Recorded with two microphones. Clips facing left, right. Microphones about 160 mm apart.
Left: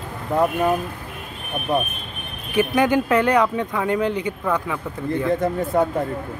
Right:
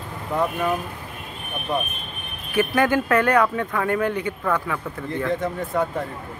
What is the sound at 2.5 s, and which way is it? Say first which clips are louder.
Speech: left 2 dB; 15° left (ahead or behind).